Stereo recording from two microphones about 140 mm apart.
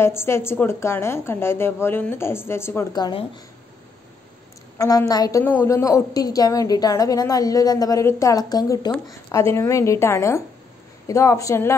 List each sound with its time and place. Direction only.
0.0 s a woman's voice: 20° left (ahead or behind)
2.9 s speech: 30° left (ahead or behind)
4.7 s a woman's voice: 25° left (ahead or behind)